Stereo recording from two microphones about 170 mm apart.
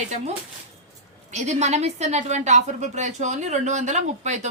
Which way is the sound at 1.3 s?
40° right (ahead or behind).